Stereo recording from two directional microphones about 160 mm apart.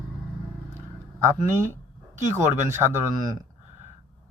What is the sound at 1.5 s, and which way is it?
Speech, 15° right (ahead or behind).